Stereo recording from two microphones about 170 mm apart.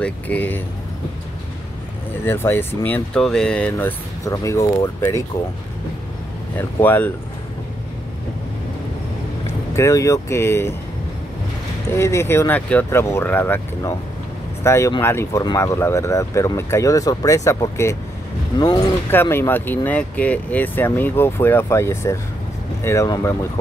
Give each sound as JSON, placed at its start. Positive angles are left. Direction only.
{"t": 0.0, "sound": "speech", "side_deg": 10}
{"t": 2.2, "sound": "speech", "side_deg": 15}
{"t": 6.5, "sound": "speech", "side_deg": 10}
{"t": 9.8, "sound": "speech", "side_deg": 20}
{"t": 11.9, "sound": "speech", "side_deg": 15}